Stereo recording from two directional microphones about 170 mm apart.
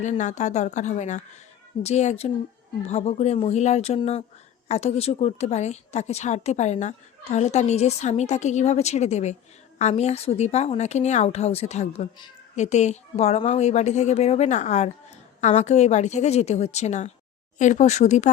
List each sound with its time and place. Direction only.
0.0 s a woman's voice: 45° left (ahead or behind)